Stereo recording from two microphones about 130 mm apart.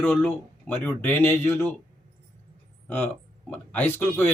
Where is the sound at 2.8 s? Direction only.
15° left (ahead or behind).